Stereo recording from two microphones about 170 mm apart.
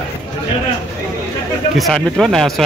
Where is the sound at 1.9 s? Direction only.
Centre (ahead or behind).